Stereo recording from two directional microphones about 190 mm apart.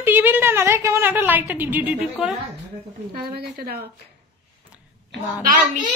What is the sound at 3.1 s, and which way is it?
Speech, 55° right (ahead or behind).